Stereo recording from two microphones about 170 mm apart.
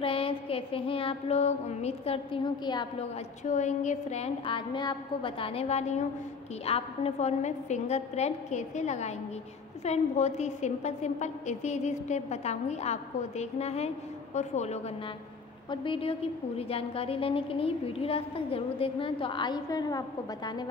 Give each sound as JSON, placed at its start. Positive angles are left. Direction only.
{"t": 0.0, "sound": "a woman's voice", "side_deg": 30}
{"t": 3.4, "sound": "a woman's voice", "side_deg": 45}
{"t": 15.7, "sound": "a woman's voice", "side_deg": 30}